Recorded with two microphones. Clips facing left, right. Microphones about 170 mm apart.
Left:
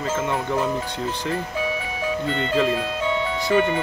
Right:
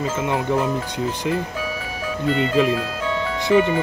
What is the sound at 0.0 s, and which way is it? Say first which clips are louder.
Speech: right 2 dB; 15° right (ahead or behind).